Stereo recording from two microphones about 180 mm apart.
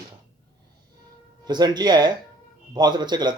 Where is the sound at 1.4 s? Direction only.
25° right (ahead or behind).